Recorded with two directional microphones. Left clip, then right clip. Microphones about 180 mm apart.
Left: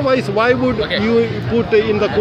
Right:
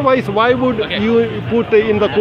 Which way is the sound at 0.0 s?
10° right (ahead or behind).